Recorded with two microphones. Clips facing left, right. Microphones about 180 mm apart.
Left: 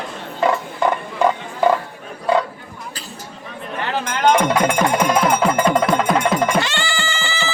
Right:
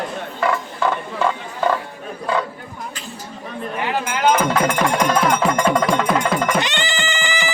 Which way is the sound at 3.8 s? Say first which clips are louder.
Left 1 dB; 10° right (ahead or behind).